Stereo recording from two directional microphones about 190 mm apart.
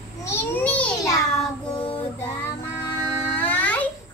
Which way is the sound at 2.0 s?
15° left (ahead or behind).